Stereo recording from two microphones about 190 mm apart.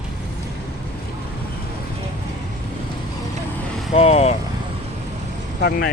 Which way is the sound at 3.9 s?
35° left (ahead or behind).